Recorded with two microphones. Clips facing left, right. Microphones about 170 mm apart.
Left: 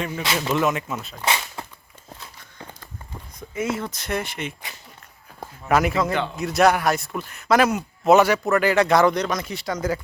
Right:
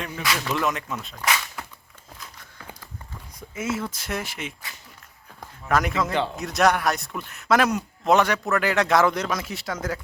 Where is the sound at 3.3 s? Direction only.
5° right (ahead or behind).